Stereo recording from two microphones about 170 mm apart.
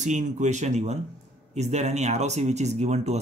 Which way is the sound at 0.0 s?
45° right (ahead or behind).